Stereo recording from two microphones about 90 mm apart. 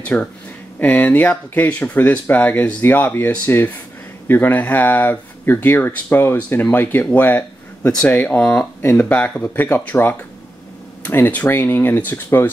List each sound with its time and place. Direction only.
0.0 s speech: 15° left (ahead or behind)
11.1 s speech: 20° left (ahead or behind)